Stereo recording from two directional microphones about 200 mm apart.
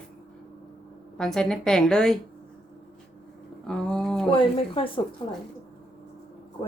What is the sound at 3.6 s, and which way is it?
Speech, 5° left (ahead or behind).